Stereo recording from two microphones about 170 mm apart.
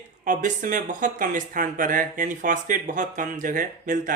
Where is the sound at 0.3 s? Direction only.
50° right (ahead or behind).